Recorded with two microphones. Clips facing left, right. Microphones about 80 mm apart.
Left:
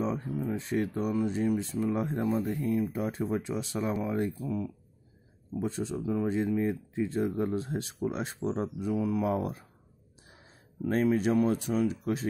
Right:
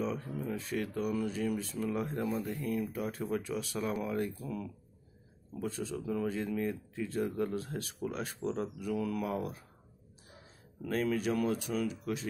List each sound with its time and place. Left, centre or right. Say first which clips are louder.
0.5 s speech: left 5 dB; left
5.5 s speech: left 5 dB; left
10.8 s speech: left 6 dB; left